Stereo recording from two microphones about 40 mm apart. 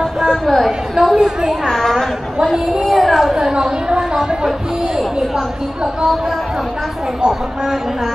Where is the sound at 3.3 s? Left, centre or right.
Centre.